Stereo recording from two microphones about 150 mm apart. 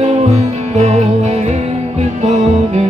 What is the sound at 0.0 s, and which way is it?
Music, 50° right (ahead or behind).